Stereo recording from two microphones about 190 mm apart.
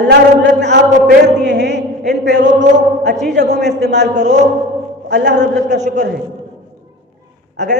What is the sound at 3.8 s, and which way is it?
Speech, 65° right (ahead or behind).